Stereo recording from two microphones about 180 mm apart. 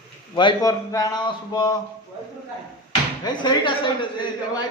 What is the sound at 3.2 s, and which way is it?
Speech, 25° left (ahead or behind).